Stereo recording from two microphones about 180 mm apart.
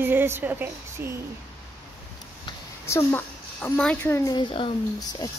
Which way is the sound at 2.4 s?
15° left (ahead or behind).